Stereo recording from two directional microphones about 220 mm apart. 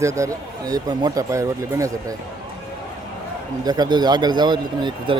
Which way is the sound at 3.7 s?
20° right (ahead or behind).